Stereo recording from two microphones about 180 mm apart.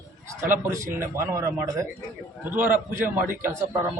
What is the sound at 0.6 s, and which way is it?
A man's voice, 15° right (ahead or behind).